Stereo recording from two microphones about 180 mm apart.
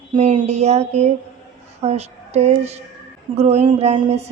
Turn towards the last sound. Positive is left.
turn(degrees=-35)  # may be behind; listen again after turning